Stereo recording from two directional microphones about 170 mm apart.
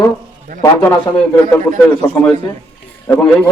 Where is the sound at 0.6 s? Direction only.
15° left (ahead or behind).